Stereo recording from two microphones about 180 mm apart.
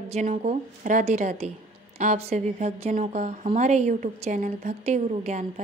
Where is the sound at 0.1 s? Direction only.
40° right (ahead or behind).